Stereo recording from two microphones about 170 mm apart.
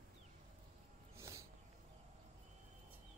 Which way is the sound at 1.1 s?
15° right (ahead or behind).